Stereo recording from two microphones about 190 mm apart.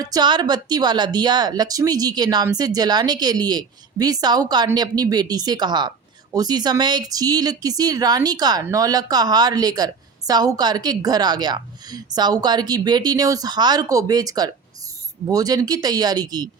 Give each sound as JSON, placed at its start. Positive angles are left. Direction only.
{"t": 0.0, "sound": "speech", "side_deg": -20}